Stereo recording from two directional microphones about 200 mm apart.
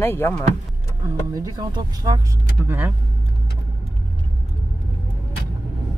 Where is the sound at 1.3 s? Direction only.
20° right (ahead or behind).